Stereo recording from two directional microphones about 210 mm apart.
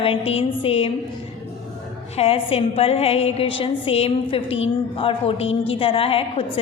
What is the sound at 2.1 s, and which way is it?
A woman's voice, 25° left (ahead or behind).